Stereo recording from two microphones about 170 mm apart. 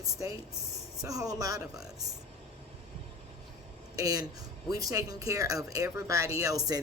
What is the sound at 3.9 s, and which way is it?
Speech, 20° right (ahead or behind).